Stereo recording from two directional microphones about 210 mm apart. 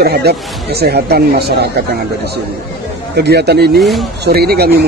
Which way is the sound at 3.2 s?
50° right (ahead or behind).